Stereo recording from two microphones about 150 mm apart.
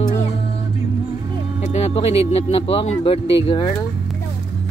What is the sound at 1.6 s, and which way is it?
Speech, 45° left (ahead or behind).